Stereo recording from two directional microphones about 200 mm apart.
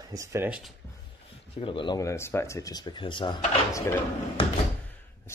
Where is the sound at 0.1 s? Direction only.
15° right (ahead or behind).